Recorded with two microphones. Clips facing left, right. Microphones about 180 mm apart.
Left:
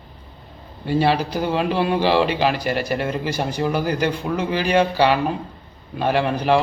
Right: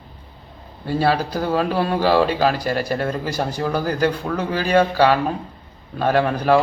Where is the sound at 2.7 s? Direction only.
40° right (ahead or behind).